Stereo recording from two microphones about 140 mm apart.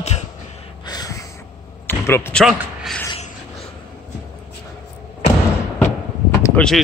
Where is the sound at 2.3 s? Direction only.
Centre (ahead or behind).